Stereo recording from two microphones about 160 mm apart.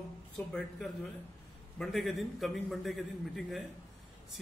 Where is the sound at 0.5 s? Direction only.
Centre (ahead or behind).